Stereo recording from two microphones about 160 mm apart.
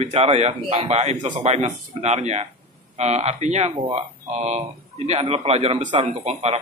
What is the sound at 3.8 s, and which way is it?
Speech, 35° right (ahead or behind).